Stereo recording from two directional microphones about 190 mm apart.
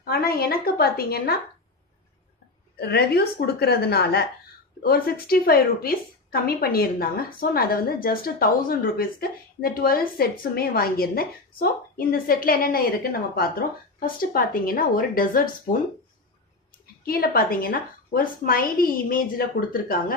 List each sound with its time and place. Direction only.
0.0 s a woman's voice: 55° left (ahead or behind)
2.7 s a woman's voice: 55° left (ahead or behind)
17.1 s a woman's voice: 50° left (ahead or behind)